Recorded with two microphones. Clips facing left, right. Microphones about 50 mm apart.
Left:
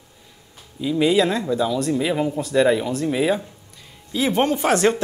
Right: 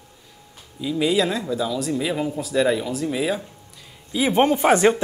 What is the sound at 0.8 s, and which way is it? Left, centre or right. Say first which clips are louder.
Speech: left 3 dB; centre.